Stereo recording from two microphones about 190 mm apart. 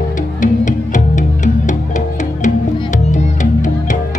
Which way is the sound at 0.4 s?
40° left (ahead or behind).